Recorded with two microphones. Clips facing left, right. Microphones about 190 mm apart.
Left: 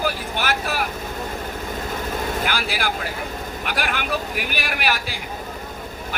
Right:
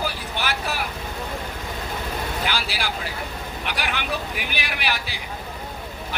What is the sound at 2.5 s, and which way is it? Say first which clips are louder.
Speech: left 3 dB; 50° left (ahead or behind).